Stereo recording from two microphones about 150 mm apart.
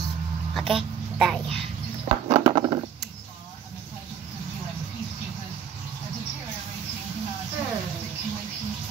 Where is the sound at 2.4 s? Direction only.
30° right (ahead or behind).